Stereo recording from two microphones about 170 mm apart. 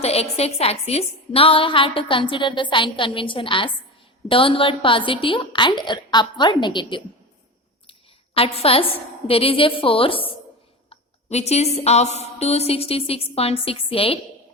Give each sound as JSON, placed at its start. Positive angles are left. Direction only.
{"t": 0.0, "sound": "a woman's voice", "side_deg": 35}